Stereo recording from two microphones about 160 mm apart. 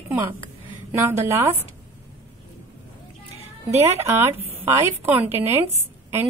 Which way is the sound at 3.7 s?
15° right (ahead or behind).